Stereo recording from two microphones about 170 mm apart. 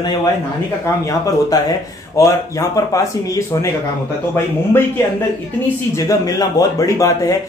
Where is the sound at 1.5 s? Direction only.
20° left (ahead or behind).